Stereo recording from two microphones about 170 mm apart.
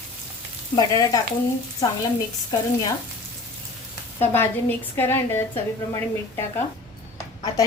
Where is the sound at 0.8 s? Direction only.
20° left (ahead or behind).